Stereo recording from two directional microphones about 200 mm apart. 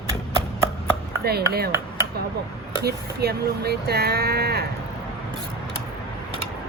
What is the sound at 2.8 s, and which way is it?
Speech, 55° right (ahead or behind).